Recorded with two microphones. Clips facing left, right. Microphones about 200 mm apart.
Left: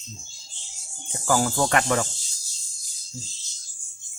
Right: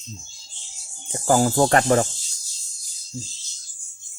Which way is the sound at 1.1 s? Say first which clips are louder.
Right 5 dB; 35° right (ahead or behind).